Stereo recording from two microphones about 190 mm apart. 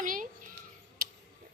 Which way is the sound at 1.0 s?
50° right (ahead or behind).